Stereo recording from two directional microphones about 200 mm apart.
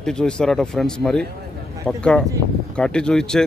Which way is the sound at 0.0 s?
5° left (ahead or behind).